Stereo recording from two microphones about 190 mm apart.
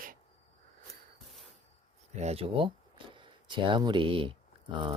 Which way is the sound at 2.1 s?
35° right (ahead or behind).